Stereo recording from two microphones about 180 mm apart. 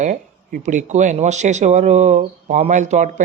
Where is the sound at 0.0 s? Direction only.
45° right (ahead or behind).